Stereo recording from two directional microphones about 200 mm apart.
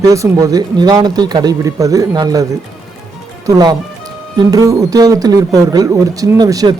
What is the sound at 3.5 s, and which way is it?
Speech, 20° right (ahead or behind).